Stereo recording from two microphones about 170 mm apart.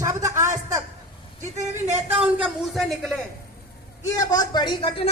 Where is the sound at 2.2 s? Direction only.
5° right (ahead or behind).